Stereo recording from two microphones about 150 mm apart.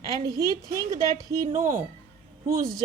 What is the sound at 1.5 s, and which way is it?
Speech, 60° right (ahead or behind).